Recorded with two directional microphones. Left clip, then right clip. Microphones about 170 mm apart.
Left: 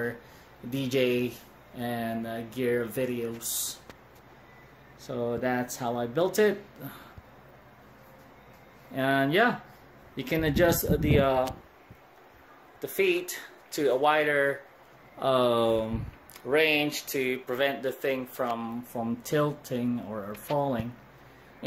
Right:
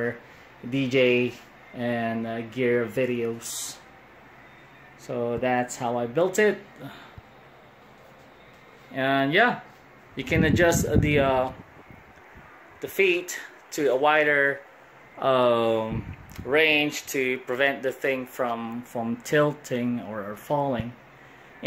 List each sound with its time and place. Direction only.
0.7 s speech: 30° right (ahead or behind)
5.1 s speech: 5° right (ahead or behind)
8.9 s speech: 15° left (ahead or behind)
10.1 s speech: centre (ahead or behind)
12.8 s speech: centre (ahead or behind)